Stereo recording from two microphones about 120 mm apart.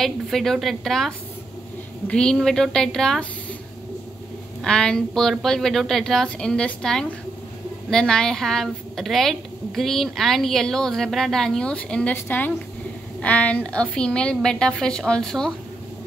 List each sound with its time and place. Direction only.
0.0 s a woman's voice: centre (ahead or behind)
4.6 s a woman's voice: 5° left (ahead or behind)